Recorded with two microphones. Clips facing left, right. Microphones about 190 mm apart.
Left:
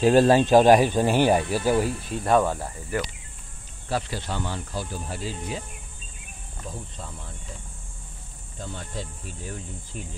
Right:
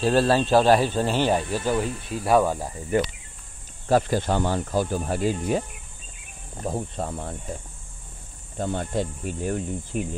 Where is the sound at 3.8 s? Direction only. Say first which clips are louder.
Right 8 dB; 45° right (ahead or behind).